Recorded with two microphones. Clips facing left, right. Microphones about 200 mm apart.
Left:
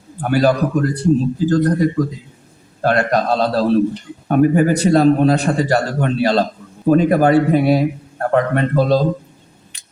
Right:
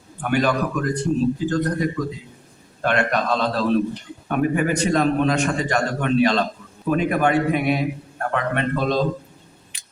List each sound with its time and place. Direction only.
0.2 s a man's voice: 35° left (ahead or behind)